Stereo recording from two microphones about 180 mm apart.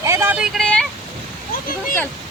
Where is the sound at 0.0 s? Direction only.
15° right (ahead or behind); by 0.9 s 5° left (ahead or behind).